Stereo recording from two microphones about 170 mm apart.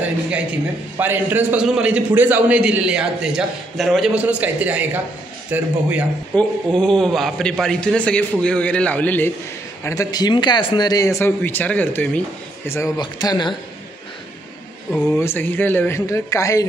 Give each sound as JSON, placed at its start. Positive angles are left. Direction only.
{"t": 0.9, "sound": "a man's voice", "side_deg": -10}
{"t": 6.3, "sound": "a man's voice", "side_deg": 5}
{"t": 9.8, "sound": "a man's voice", "side_deg": 20}
{"t": 14.9, "sound": "speech", "side_deg": 10}